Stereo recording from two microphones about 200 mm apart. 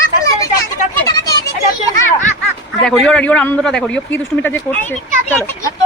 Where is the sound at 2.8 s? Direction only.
5° left (ahead or behind).